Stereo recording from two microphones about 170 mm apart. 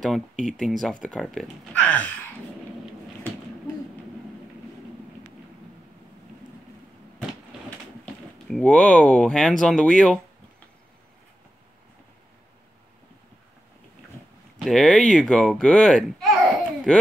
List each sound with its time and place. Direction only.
0.0 s speech: centre (ahead or behind)
8.5 s speech: 5° left (ahead or behind)
14.6 s speech: centre (ahead or behind)